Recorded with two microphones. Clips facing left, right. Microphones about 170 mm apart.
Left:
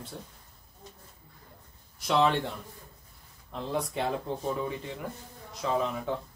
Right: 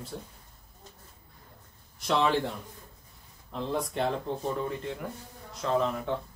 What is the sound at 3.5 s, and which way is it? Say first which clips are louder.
Speech: right 1 dB; centre (ahead or behind).